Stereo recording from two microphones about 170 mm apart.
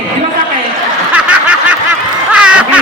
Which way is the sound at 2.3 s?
5° right (ahead or behind).